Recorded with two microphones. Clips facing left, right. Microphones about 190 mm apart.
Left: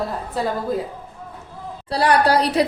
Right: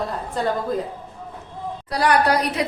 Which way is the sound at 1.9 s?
30° left (ahead or behind).